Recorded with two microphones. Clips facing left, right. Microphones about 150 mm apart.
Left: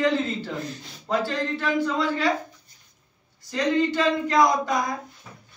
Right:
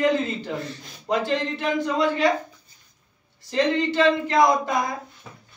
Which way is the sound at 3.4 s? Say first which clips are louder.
Right 1 dB; 25° right (ahead or behind).